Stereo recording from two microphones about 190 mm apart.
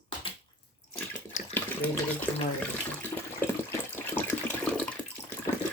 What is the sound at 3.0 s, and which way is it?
Water, 10° left (ahead or behind).